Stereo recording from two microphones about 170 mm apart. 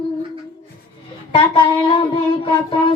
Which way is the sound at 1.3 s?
30° left (ahead or behind).